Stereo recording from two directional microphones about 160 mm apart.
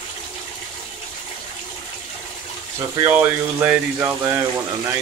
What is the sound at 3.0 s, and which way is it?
Speech, 10° right (ahead or behind).